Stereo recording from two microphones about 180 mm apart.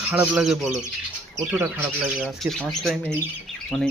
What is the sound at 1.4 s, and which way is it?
Speech, 15° right (ahead or behind).